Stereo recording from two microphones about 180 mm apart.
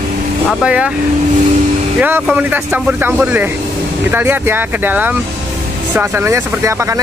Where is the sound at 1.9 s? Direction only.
10° right (ahead or behind).